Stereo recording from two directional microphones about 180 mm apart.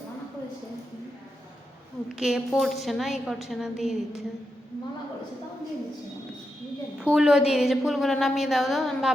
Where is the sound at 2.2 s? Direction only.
Centre (ahead or behind).